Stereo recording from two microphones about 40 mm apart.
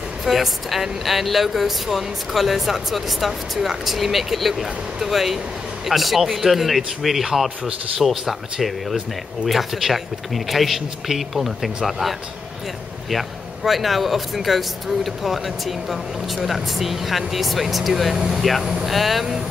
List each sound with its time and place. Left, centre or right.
0.2 s speech: centre
13.7 s speech: centre
18.1 s speech: centre
18.9 s speech: centre